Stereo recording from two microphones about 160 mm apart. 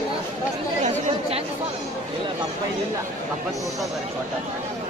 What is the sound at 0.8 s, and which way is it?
Chatter, 40° right (ahead or behind).